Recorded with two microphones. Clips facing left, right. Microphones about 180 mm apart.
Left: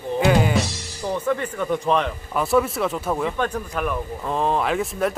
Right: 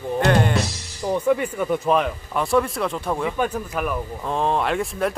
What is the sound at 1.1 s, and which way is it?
Speech, 10° right (ahead or behind).